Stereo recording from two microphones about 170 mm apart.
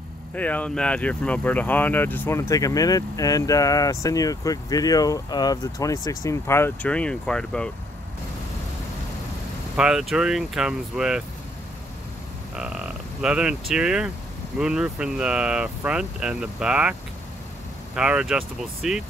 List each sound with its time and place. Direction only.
0.3 s speech: 10° left (ahead or behind)
9.8 s speech: 5° right (ahead or behind)
12.5 s speech: 5° right (ahead or behind)
17.9 s speech: 5° right (ahead or behind)